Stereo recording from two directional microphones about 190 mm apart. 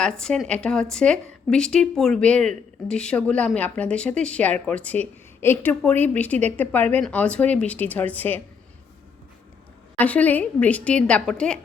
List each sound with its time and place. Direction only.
0.0 s speech: 5° left (ahead or behind)
10.0 s a woman's voice: 10° left (ahead or behind)